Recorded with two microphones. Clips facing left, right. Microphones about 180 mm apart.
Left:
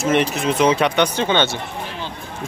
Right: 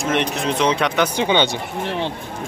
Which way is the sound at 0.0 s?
5° left (ahead or behind).